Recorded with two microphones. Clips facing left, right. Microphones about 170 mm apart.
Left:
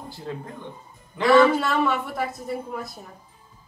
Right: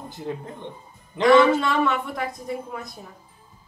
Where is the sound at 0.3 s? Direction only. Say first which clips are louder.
Right 2 dB; 20° right (ahead or behind).